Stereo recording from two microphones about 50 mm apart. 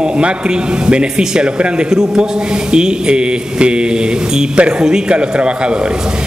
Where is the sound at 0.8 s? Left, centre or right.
Centre.